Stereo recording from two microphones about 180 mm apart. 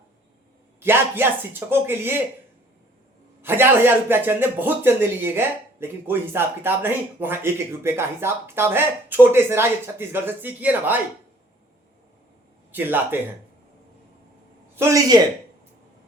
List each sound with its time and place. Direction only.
0.8 s speech: 10° right (ahead or behind)
3.4 s speech: 10° right (ahead or behind)
12.7 s speech: 10° right (ahead or behind)
14.8 s speech: 15° right (ahead or behind)